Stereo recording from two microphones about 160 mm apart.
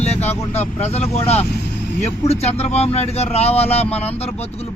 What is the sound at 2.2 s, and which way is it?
Speech, 40° left (ahead or behind).